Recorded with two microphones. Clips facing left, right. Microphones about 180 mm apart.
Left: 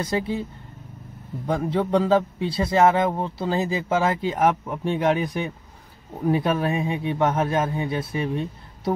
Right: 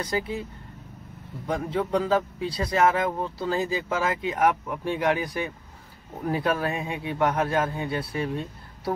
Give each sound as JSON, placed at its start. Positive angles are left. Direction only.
{"t": 0.0, "sound": "a man's voice", "side_deg": 30}
{"t": 1.5, "sound": "a man's voice", "side_deg": 30}